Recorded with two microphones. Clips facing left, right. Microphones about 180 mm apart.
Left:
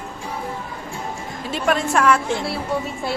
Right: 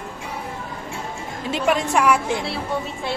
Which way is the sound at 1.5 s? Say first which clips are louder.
Even; 15° right (ahead or behind).